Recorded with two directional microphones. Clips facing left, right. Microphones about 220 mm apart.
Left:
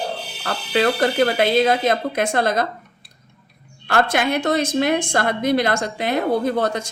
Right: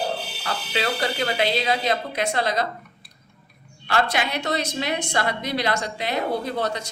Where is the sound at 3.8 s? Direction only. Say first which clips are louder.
Left 4 dB; 50° left (ahead or behind).